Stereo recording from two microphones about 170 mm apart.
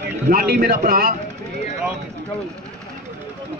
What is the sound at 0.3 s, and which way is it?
Speech, 60° right (ahead or behind).